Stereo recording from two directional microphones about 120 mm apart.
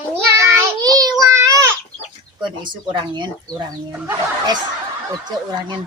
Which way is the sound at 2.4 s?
40° right (ahead or behind).